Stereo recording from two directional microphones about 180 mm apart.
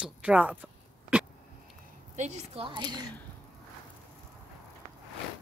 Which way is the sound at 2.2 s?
30° right (ahead or behind).